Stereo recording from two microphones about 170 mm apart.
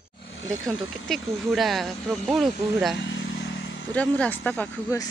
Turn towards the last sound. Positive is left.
turn(degrees=10)  # may be behind; listen again after turning